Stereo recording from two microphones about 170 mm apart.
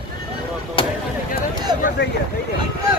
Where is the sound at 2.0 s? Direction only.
90° left.